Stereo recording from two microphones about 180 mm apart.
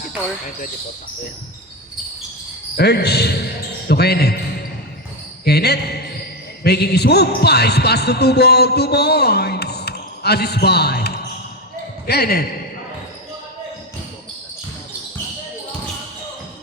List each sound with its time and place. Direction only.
2.7 s speech: 65° left (ahead or behind)
5.5 s speech: 65° left (ahead or behind)